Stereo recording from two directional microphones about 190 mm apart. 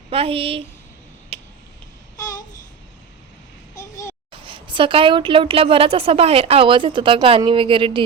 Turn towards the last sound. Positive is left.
turn(degrees=-25)  # may be behind; listen again after turning